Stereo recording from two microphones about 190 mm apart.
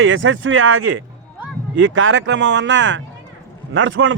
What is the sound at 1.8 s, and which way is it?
Speech, 90° right.